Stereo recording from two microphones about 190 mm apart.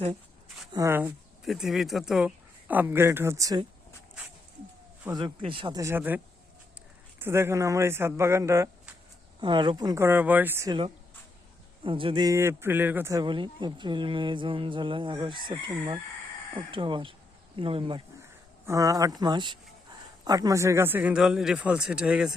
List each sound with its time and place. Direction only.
0.7 s speech: 15° right (ahead or behind)
1.5 s speech: centre (ahead or behind); by 3.7 s 20° right (ahead or behind)
5.1 s a man's voice: 25° right (ahead or behind)
9.4 s speech: 25° right (ahead or behind)
11.8 s a man's voice: 25° right (ahead or behind)
18.6 s a man's voice: 15° right (ahead or behind)